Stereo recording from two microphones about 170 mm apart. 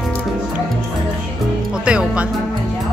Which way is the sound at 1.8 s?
5° right (ahead or behind).